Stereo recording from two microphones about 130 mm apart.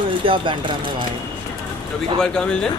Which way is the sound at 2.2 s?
5° left (ahead or behind).